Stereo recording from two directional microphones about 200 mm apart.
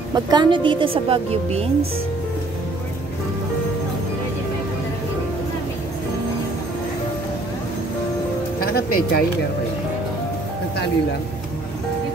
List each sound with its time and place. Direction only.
0.1 s speech: 20° right (ahead or behind)
8.5 s speech: 50° left (ahead or behind)